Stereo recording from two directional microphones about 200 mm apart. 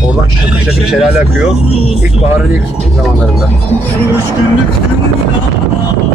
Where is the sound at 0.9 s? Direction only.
5° right (ahead or behind).